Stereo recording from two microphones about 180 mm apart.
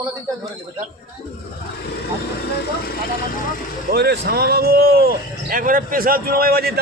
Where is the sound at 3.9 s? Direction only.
60° right (ahead or behind).